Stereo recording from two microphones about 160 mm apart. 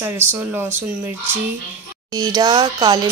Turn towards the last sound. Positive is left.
turn(degrees=-25)  # may be behind; listen again after turning